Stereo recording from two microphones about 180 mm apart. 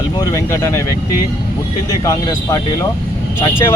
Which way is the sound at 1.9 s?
20° left (ahead or behind).